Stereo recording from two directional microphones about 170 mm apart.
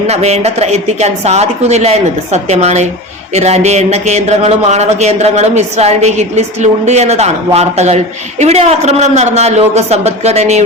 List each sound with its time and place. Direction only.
0.1 s speech: 40° right (ahead or behind)